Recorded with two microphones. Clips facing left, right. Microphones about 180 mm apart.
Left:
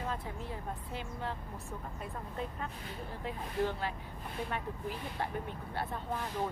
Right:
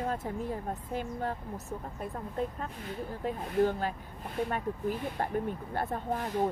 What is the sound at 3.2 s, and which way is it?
Speech, 45° right (ahead or behind).